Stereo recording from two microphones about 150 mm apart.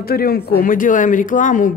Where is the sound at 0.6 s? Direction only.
65° left (ahead or behind).